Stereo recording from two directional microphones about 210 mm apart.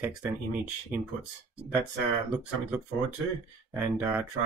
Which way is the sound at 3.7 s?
10° right (ahead or behind).